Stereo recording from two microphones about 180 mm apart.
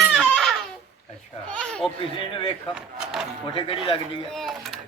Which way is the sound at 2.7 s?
5° right (ahead or behind).